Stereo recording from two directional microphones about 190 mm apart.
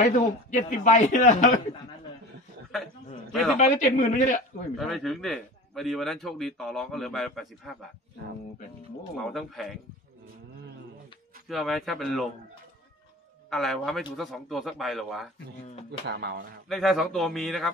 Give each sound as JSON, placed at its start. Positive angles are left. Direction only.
{"t": 0.5, "sound": "a man's voice", "side_deg": 40}
{"t": 3.3, "sound": "speech", "side_deg": 0}
{"t": 3.5, "sound": "a man's voice", "side_deg": 40}
{"t": 4.7, "sound": "a man's voice", "side_deg": 0}
{"t": 9.1, "sound": "a man's voice", "side_deg": 0}
{"t": 11.4, "sound": "a man's voice", "side_deg": 0}
{"t": 13.5, "sound": "a man's voice", "side_deg": 0}
{"t": 16.1, "sound": "speech", "side_deg": -55}
{"t": 16.6, "sound": "a man's voice", "side_deg": 0}